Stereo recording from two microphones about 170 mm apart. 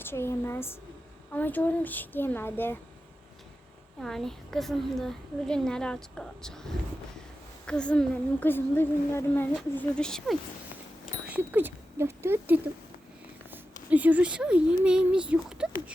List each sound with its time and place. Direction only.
0.0 s a woman's voice: 15° left (ahead or behind)
4.0 s a woman's voice: centre (ahead or behind)
11.0 s a sound: 10° right (ahead or behind)
13.5 s a woman's voice: 10° right (ahead or behind)